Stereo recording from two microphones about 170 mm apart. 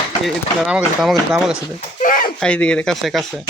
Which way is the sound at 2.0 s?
55° left (ahead or behind).